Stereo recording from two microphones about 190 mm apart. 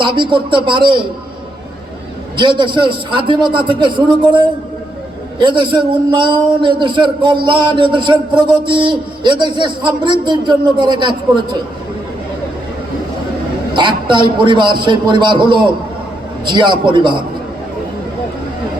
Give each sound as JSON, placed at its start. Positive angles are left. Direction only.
{"t": 0.0, "sound": "a man's voice", "side_deg": -25}
{"t": 2.3, "sound": "a man's voice", "side_deg": -25}
{"t": 13.7, "sound": "a man's voice", "side_deg": -25}